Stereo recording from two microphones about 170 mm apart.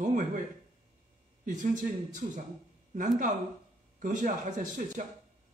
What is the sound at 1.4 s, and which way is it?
Speech, 45° right (ahead or behind).